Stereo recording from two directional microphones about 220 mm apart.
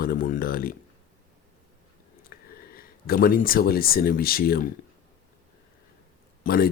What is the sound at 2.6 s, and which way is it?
Speech, 40° left (ahead or behind).